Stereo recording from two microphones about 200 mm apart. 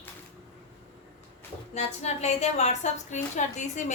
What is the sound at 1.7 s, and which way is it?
A woman's voice, 35° left (ahead or behind).